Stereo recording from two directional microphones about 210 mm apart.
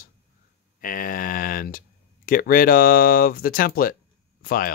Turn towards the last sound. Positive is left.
turn(degrees=45)  # may be behind; listen again after turning